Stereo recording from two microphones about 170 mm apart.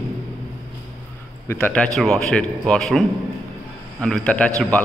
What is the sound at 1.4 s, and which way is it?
A man's voice, 10° left (ahead or behind).